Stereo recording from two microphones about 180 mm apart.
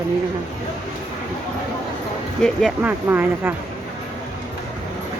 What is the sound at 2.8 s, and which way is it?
Speech, 10° right (ahead or behind).